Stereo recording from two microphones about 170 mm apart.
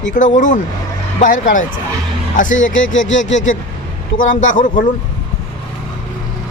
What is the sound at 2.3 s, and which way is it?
Speech, 50° left (ahead or behind).